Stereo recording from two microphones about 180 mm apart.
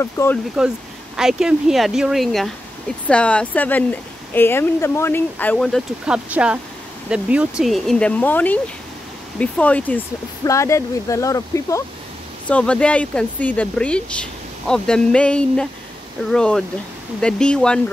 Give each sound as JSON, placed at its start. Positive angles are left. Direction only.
{"t": 0.0, "sound": "speech", "side_deg": 15}
{"t": 1.1, "sound": "speech", "side_deg": -5}
{"t": 12.4, "sound": "speech", "side_deg": 5}